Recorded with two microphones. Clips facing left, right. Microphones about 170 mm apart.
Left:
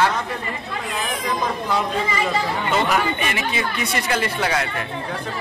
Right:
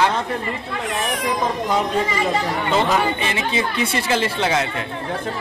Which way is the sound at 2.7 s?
25° right (ahead or behind).